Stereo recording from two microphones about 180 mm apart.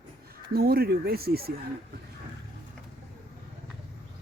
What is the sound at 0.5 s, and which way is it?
Speech, 60° right (ahead or behind).